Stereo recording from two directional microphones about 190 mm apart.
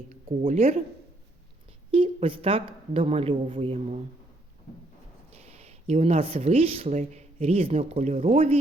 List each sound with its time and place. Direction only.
0.1 s speech: 40° right (ahead or behind)
1.9 s a woman's voice: 30° right (ahead or behind)
5.3 s speech: 35° right (ahead or behind)